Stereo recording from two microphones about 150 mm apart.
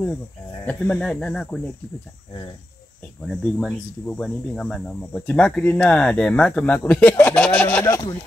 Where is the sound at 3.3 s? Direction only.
5° left (ahead or behind).